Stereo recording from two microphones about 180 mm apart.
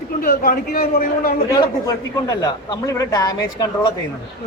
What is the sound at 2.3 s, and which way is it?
A man's voice, 20° left (ahead or behind).